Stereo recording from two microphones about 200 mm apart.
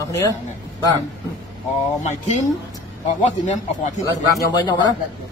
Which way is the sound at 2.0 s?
35° left (ahead or behind).